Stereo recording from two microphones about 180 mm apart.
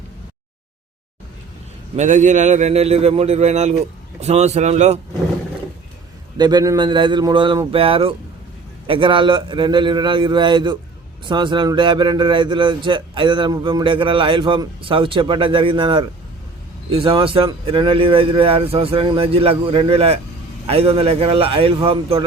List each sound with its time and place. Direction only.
2.0 s a man's voice: 45° right (ahead or behind)
6.3 s a man's voice: 25° right (ahead or behind)